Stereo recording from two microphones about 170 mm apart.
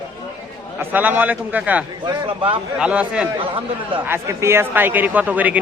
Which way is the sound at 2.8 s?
5° right (ahead or behind).